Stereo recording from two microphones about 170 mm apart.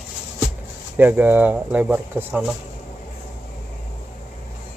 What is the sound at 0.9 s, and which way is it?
Speech, 10° right (ahead or behind).